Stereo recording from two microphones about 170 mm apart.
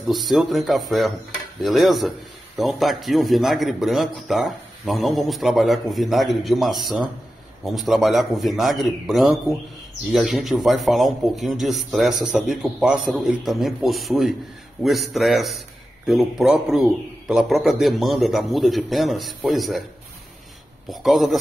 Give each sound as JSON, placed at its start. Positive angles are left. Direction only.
{"t": 0.0, "sound": "a man's voice", "side_deg": 0}
{"t": 20.9, "sound": "a man's voice", "side_deg": 0}